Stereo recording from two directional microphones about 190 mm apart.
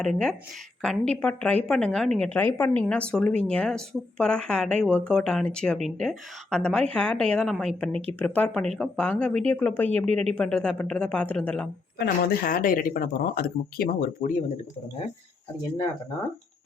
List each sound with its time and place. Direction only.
0.0 s a woman's voice: 5° left (ahead or behind)
11.9 s speech: 50° left (ahead or behind)